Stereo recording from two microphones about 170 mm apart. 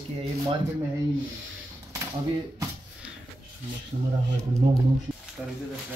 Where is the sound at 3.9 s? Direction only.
35° right (ahead or behind).